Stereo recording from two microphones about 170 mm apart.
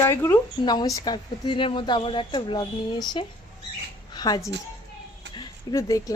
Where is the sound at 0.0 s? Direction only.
15° left (ahead or behind).